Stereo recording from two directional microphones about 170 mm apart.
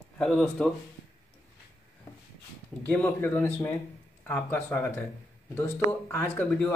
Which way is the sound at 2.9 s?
10° left (ahead or behind).